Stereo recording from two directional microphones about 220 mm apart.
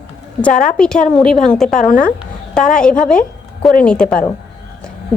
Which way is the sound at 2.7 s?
5° left (ahead or behind).